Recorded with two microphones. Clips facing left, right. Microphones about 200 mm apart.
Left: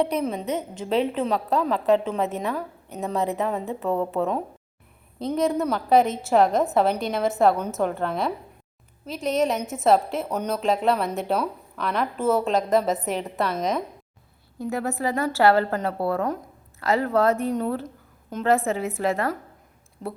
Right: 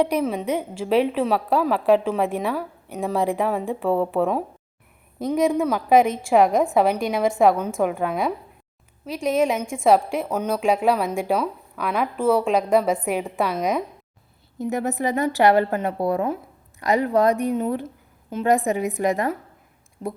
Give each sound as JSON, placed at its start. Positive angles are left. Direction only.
{"t": 0.3, "sound": "a woman's voice", "side_deg": -10}
{"t": 5.5, "sound": "a woman's voice", "side_deg": -10}
{"t": 9.0, "sound": "a woman's voice", "side_deg": 0}